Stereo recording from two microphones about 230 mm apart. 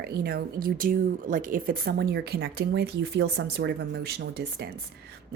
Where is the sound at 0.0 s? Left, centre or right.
Right.